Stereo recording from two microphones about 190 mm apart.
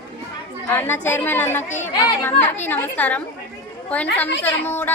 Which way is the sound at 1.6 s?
40° left (ahead or behind).